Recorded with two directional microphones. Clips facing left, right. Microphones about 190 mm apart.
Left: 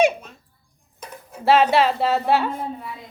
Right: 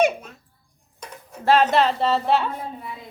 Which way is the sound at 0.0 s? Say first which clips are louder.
Left 1 dB; 5° right (ahead or behind).